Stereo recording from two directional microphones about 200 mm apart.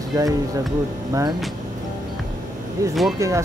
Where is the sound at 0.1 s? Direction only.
20° right (ahead or behind).